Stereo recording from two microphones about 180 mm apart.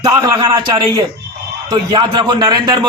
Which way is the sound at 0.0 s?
25° right (ahead or behind).